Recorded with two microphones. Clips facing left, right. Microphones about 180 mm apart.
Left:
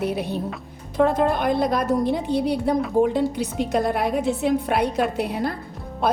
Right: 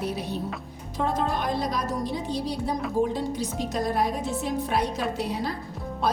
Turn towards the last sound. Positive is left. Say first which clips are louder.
# left 4 dB
turn(degrees=55)  # may be behind; listen again after turning